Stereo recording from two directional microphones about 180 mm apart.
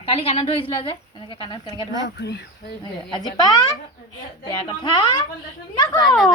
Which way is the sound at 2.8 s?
25° left (ahead or behind).